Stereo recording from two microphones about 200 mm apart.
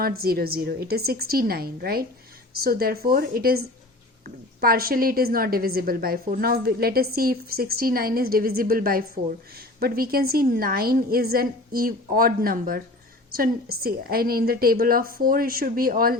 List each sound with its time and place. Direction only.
0.0 s a woman's voice: 50° right (ahead or behind)
4.6 s a woman's voice: 50° right (ahead or behind)